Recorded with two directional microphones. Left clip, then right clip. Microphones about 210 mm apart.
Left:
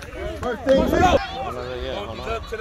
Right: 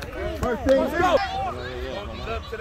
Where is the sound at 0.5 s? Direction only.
55° left (ahead or behind).